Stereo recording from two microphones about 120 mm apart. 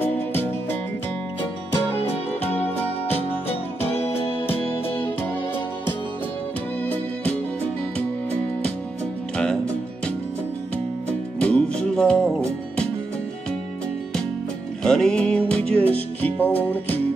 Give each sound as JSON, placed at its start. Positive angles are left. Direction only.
{"t": 3.1, "sound": "music", "side_deg": 60}
{"t": 11.3, "sound": "music", "side_deg": 10}
{"t": 14.8, "sound": "music", "side_deg": 5}